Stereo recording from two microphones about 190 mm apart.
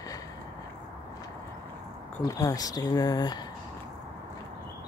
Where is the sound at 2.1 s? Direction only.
20° left (ahead or behind).